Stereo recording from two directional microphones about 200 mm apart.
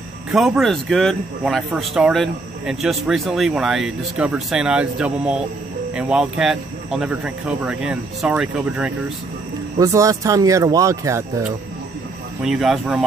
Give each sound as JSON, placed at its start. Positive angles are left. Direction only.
{"t": 0.3, "sound": "speech", "side_deg": 0}
{"t": 9.8, "sound": "speech", "side_deg": -15}
{"t": 12.4, "sound": "speech", "side_deg": 0}